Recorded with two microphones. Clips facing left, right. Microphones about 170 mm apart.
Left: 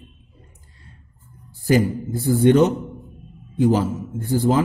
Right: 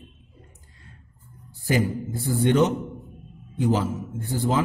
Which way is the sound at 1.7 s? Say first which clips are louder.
Left 5 dB; 40° left (ahead or behind).